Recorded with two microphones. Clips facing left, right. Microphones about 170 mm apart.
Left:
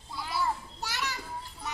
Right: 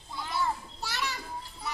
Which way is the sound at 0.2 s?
5° left (ahead or behind).